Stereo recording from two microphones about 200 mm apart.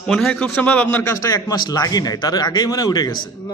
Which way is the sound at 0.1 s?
5° left (ahead or behind).